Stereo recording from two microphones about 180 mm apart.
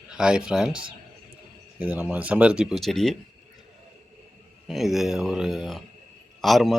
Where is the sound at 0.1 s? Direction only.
5° right (ahead or behind).